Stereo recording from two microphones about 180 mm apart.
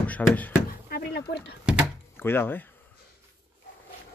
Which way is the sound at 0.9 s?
65° left (ahead or behind).